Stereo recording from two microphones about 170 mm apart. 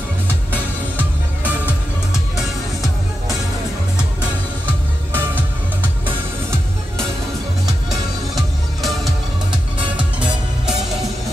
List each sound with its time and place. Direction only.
8.4 s music: centre (ahead or behind)